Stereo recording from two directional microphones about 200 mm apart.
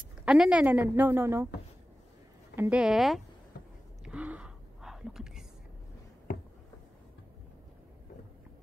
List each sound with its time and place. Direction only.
0.2 s a woman's voice: 5° right (ahead or behind)
2.5 s speech: 10° right (ahead or behind)
3.5 s a sound: 55° left (ahead or behind)
4.0 s whispering: 5° right (ahead or behind)